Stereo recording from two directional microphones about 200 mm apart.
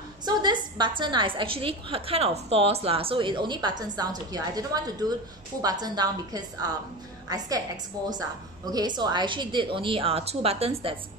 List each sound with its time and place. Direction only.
0.2 s a woman's voice: 20° right (ahead or behind)